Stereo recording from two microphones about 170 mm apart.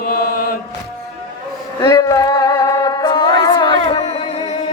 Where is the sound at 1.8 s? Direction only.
20° left (ahead or behind).